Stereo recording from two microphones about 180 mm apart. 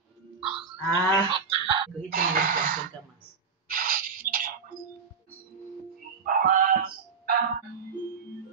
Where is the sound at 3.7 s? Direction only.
50° right (ahead or behind).